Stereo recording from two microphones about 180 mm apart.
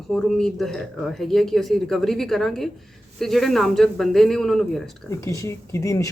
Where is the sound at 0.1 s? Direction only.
Centre (ahead or behind).